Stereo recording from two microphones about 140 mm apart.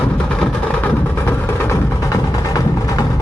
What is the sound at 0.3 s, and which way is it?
Music, 5° left (ahead or behind).